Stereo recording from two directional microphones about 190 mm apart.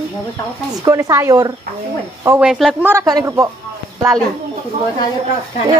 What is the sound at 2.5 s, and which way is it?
Speech, centre (ahead or behind).